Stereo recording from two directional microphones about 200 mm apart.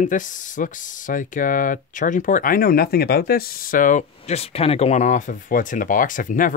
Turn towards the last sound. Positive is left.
turn(degrees=40)  # may be behind; listen again after turning